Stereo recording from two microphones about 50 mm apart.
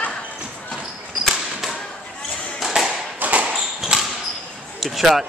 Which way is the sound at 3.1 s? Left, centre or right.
Right.